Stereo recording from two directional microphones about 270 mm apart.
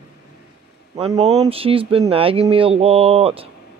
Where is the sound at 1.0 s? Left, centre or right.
Right.